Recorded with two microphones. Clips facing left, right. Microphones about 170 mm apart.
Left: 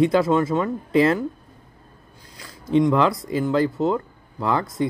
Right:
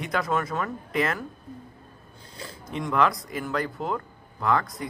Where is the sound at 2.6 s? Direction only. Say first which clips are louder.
Left 7 dB; 25° left (ahead or behind).